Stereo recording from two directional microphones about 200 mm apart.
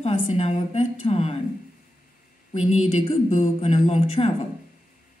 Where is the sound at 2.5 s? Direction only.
35° left (ahead or behind).